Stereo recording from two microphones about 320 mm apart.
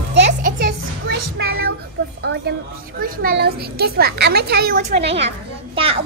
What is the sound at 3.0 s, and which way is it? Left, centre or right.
A child's voice, right.